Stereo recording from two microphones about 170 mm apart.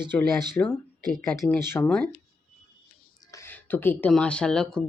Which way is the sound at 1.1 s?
Centre (ahead or behind).